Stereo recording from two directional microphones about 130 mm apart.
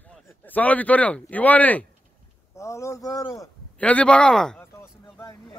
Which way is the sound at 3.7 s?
10° left (ahead or behind).